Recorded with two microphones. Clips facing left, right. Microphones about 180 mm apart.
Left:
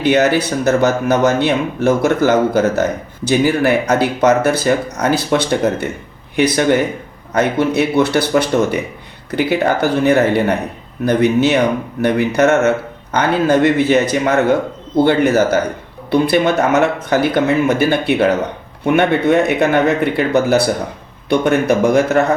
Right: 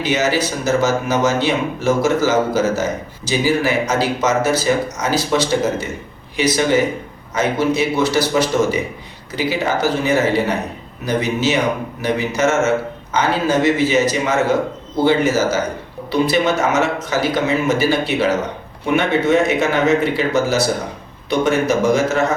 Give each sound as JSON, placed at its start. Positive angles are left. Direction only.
{"t": 0.0, "sound": "a man's voice", "side_deg": 60}